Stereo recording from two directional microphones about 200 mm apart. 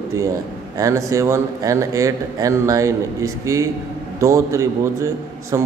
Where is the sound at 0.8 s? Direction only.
15° right (ahead or behind).